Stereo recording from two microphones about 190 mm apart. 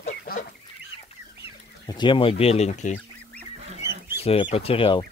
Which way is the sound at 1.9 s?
25° left (ahead or behind).